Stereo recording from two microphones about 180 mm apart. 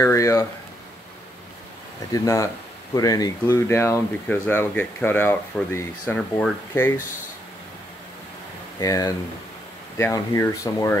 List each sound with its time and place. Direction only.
0.0 s a sound: 15° left (ahead or behind)
2.1 s speech: 20° left (ahead or behind)
8.7 s speech: 20° left (ahead or behind)